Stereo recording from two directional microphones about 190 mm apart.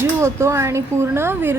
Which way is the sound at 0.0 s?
15° right (ahead or behind).